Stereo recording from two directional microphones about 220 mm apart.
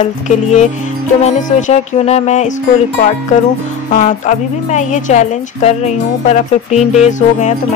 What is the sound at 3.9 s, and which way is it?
A woman's voice, 35° left (ahead or behind).